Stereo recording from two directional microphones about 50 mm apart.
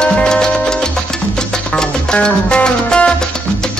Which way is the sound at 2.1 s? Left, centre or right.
Centre.